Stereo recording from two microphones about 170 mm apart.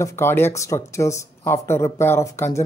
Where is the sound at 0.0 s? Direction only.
15° left (ahead or behind).